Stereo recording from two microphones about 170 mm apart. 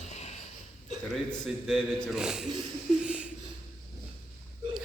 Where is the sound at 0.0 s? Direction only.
45° left (ahead or behind).